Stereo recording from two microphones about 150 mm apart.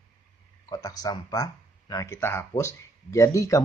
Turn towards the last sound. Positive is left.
turn(degrees=20)  # may be behind; listen again after turning